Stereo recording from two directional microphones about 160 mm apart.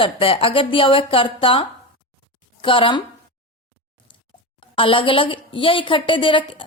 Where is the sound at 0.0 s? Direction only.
35° left (ahead or behind).